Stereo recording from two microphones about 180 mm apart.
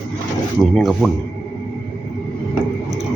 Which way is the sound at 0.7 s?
Centre (ahead or behind).